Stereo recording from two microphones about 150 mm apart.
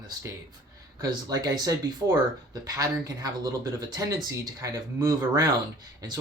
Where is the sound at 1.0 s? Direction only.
25° right (ahead or behind).